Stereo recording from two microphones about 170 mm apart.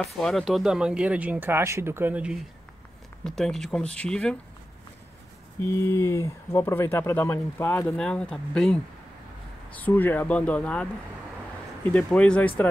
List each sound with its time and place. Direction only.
0.0 s speech: centre (ahead or behind)
5.6 s speech: 15° left (ahead or behind)
9.8 s speech: 10° left (ahead or behind)
11.9 s speech: 5° left (ahead or behind)